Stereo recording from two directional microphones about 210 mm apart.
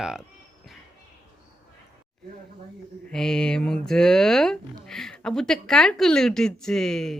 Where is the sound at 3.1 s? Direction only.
5° left (ahead or behind).